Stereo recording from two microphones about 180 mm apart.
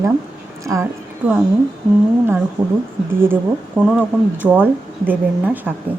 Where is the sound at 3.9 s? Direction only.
10° right (ahead or behind).